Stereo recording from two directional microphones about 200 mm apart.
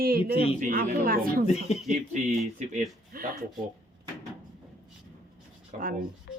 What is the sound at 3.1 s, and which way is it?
Speech, 45° right (ahead or behind).